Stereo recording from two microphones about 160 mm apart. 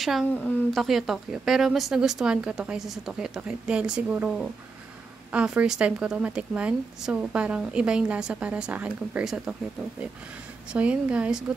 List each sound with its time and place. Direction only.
0.0 s a woman's voice: centre (ahead or behind)
10.7 s a woman's voice: 5° right (ahead or behind)